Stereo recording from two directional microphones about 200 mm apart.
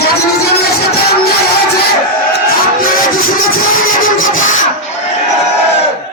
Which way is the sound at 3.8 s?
90° left.